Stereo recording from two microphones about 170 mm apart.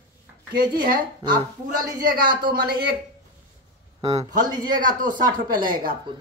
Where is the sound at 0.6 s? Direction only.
60° right (ahead or behind).